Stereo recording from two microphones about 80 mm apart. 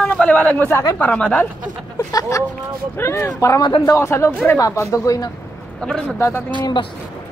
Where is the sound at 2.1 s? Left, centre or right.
Left.